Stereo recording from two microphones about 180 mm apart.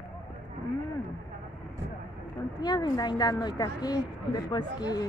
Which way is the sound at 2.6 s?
20° left (ahead or behind).